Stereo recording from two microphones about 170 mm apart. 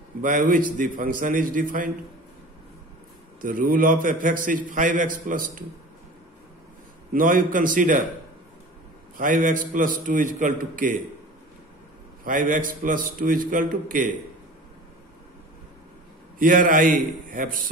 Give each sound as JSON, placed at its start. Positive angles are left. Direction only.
{"t": 0.2, "sound": "a man's voice", "side_deg": -50}
{"t": 3.3, "sound": "a man's voice", "side_deg": -55}
{"t": 7.1, "sound": "a man's voice", "side_deg": -55}
{"t": 9.1, "sound": "a man's voice", "side_deg": -55}
{"t": 12.3, "sound": "a man's voice", "side_deg": -55}
{"t": 16.3, "sound": "a man's voice", "side_deg": -55}